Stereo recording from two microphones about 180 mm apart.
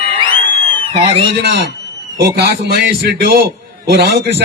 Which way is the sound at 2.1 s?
65° right (ahead or behind).